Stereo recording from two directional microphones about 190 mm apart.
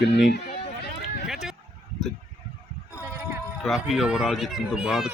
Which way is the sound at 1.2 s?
Centre (ahead or behind).